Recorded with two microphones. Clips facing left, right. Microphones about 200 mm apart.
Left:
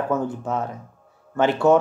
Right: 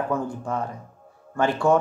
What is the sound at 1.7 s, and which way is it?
Speech, 20° left (ahead or behind).